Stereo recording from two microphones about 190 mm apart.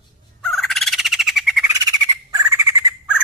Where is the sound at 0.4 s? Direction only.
Centre (ahead or behind).